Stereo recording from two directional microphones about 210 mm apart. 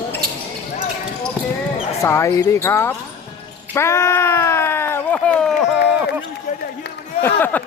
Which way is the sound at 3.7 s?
10° left (ahead or behind).